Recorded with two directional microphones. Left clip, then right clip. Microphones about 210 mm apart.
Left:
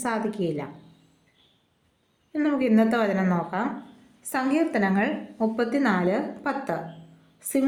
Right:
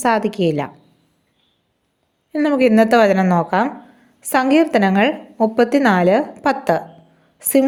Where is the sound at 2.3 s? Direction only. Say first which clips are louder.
Right 9 dB; 45° right (ahead or behind).